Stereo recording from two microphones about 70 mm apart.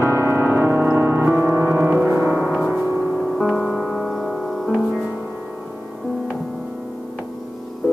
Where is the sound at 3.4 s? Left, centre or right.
Centre.